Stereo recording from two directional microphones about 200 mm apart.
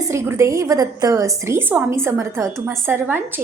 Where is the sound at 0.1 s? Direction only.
15° right (ahead or behind).